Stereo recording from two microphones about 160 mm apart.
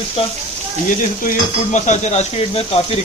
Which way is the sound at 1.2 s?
50° left (ahead or behind).